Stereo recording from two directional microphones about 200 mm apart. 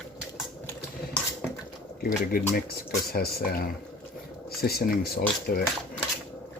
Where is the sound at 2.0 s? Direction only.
50° left (ahead or behind).